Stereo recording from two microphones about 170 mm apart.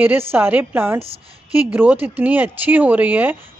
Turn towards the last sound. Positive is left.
turn(degrees=-10)  # may be behind; listen again after turning